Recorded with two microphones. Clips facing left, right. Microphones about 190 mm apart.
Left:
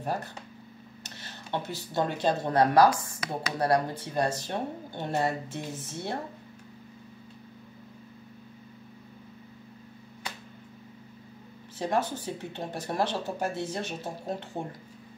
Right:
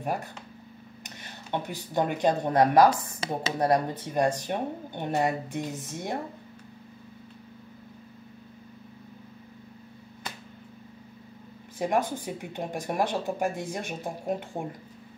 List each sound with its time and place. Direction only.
1.0 s speech: 15° right (ahead or behind)
11.8 s speech: 15° right (ahead or behind)